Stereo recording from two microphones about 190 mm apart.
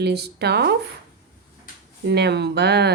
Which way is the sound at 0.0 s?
60° right (ahead or behind).